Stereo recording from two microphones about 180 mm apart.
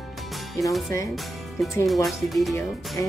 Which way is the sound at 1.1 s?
Centre (ahead or behind).